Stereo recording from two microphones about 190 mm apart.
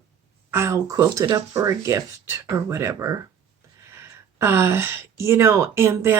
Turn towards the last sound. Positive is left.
turn(degrees=-15)  # may be behind; listen again after turning